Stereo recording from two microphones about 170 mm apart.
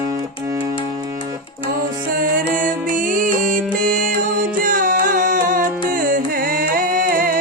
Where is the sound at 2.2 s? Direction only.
50° right (ahead or behind).